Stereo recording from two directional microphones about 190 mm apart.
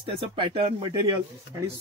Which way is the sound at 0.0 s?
25° right (ahead or behind).